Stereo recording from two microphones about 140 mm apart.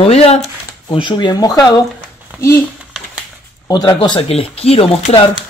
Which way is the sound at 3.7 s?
30° left (ahead or behind).